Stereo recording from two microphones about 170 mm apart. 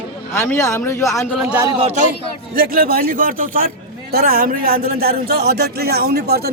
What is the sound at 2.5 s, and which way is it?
A man's voice, 60° right (ahead or behind).